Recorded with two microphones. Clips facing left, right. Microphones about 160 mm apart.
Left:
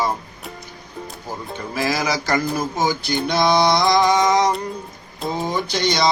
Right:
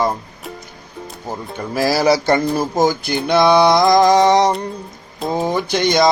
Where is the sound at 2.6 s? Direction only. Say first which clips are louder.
Right 5 dB; 45° right (ahead or behind).